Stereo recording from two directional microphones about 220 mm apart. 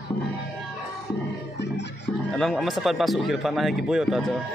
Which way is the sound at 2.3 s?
Centre (ahead or behind).